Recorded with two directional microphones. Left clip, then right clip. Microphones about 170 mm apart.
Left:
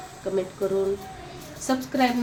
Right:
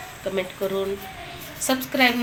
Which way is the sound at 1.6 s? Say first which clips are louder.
Right 3 dB; 30° left (ahead or behind).